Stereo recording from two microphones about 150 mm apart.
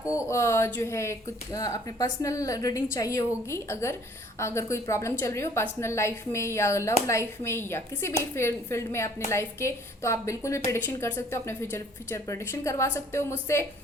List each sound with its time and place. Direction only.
0.0 s a woman's voice: 20° left (ahead or behind)